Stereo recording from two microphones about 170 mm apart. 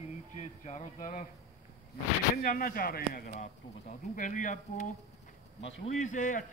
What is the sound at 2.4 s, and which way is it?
A man's voice, 60° left (ahead or behind).